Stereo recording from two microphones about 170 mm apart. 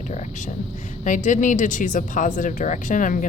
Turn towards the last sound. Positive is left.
turn(degrees=50)  # may be behind; listen again after turning